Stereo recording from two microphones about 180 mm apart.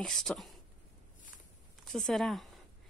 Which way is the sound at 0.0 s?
Centre (ahead or behind).